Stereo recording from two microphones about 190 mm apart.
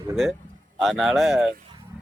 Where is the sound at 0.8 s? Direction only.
Centre (ahead or behind).